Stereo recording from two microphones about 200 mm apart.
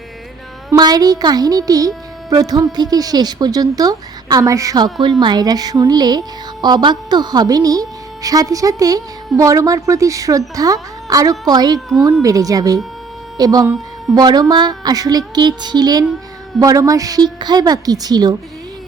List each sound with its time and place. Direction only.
0.7 s a woman's voice: 20° right (ahead or behind)